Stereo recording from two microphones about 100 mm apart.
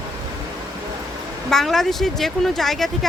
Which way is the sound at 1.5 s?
5° left (ahead or behind).